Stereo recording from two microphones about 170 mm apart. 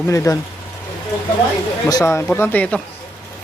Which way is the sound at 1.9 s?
20° left (ahead or behind).